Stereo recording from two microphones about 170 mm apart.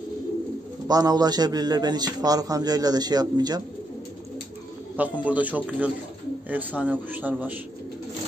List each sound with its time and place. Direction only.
0.8 s a man's voice: 20° right (ahead or behind)
4.9 s a man's voice: 10° right (ahead or behind)